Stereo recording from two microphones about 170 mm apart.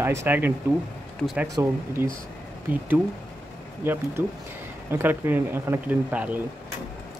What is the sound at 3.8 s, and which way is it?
Speech, 10° right (ahead or behind).